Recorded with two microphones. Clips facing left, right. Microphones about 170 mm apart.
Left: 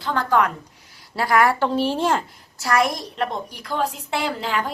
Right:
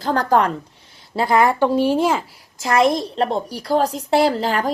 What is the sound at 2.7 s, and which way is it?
A woman's voice, 25° right (ahead or behind).